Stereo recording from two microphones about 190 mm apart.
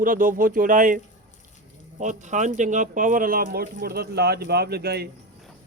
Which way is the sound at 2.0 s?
40° right (ahead or behind).